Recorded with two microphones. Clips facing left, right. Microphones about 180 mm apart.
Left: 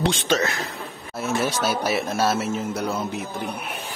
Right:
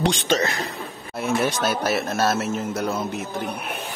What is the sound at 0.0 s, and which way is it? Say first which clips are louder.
Speech: right 1 dB; 5° left (ahead or behind).